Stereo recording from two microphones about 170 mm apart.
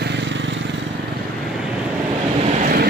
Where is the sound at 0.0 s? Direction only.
90° right.